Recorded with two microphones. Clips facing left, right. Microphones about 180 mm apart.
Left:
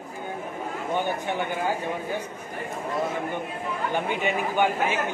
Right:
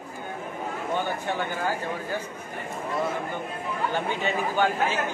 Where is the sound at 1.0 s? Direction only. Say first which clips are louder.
Left 3 dB; 15° left (ahead or behind).